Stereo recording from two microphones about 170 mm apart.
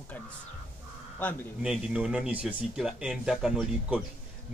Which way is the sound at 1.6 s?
5° right (ahead or behind).